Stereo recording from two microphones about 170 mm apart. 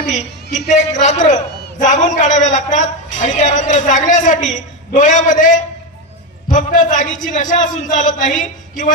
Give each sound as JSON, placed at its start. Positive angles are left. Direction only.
{"t": 0.1, "sound": "a man's voice", "side_deg": 45}